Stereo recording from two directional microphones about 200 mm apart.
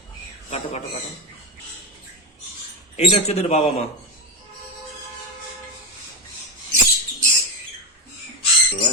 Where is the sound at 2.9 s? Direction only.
30° left (ahead or behind).